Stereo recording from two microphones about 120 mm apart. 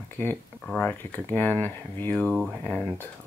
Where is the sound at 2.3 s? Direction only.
5° right (ahead or behind).